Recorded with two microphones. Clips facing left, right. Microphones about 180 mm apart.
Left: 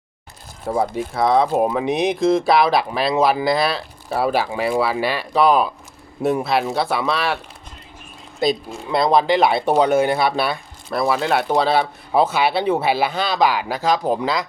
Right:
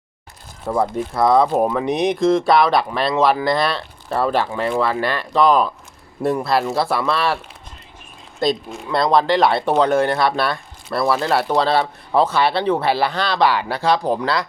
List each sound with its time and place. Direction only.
0.8 s speech: centre (ahead or behind)
8.4 s speech: 5° left (ahead or behind)
8.9 s speech: 20° left (ahead or behind)
9.1 s speech: 5° left (ahead or behind)